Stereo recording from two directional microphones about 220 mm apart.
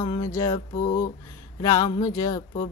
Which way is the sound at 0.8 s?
40° left (ahead or behind).